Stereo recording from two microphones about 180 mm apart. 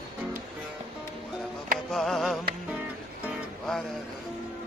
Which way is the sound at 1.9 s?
Centre (ahead or behind).